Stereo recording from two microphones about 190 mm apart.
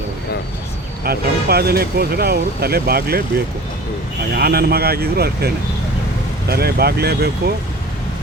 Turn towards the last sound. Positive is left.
turn(degrees=-55)  # may be behind; listen again after turning